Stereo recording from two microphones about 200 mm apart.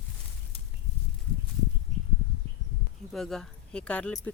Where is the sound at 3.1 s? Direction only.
Centre (ahead or behind).